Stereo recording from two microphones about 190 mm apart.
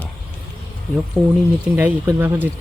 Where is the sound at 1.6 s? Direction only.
10° right (ahead or behind).